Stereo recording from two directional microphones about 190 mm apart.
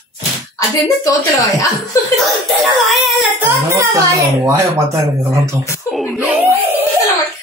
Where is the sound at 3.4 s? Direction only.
15° right (ahead or behind).